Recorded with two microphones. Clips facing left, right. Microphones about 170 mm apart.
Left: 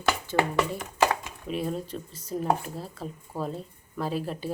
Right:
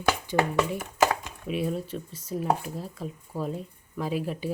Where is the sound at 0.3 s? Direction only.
15° right (ahead or behind).